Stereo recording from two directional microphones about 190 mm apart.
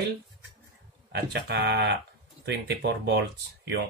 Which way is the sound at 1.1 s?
60° right (ahead or behind).